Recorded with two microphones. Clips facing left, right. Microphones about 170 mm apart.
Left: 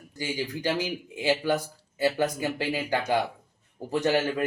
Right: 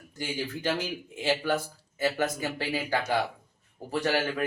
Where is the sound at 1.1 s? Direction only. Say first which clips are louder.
Left 2 dB; 15° left (ahead or behind).